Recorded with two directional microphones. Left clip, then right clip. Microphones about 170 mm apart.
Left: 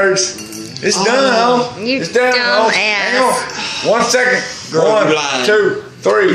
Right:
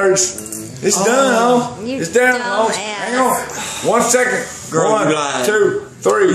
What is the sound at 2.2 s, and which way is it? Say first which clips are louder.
Speech: left 3 dB; 10° left (ahead or behind).